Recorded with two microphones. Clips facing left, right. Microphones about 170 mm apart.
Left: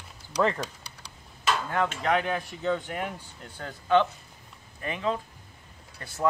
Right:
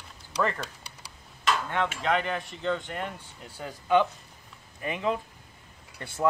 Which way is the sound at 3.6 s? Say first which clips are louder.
Even; 10° right (ahead or behind).